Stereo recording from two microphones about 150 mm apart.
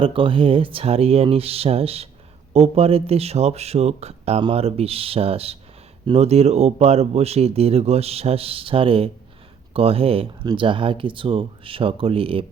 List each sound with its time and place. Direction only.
0.0 s speech: 35° right (ahead or behind)